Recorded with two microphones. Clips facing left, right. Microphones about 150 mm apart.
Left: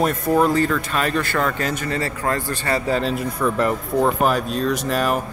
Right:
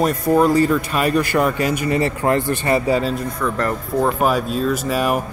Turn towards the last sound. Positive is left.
turn(degrees=-10)  # may be behind; listen again after turning